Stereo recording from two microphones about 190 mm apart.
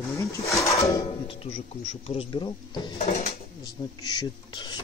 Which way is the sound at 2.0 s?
30° left (ahead or behind).